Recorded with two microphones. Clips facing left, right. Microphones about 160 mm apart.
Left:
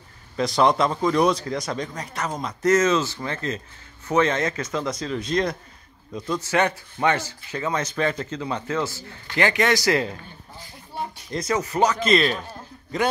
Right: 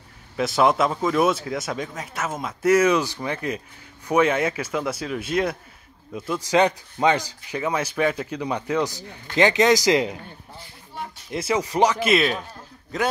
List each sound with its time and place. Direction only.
0.4 s a man's voice: 5° right (ahead or behind)
11.2 s a man's voice: 10° right (ahead or behind)